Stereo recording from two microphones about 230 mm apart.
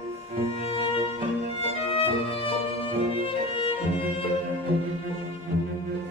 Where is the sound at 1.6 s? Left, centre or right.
Left.